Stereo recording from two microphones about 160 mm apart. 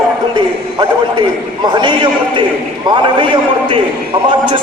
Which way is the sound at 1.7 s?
30° right (ahead or behind).